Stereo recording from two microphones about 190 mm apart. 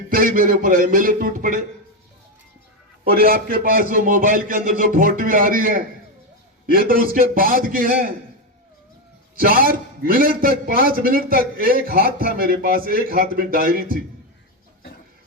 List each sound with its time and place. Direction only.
0.1 s a man's voice: 50° right (ahead or behind)
3.0 s a man's voice: 50° right (ahead or behind)
9.4 s a man's voice: 50° right (ahead or behind)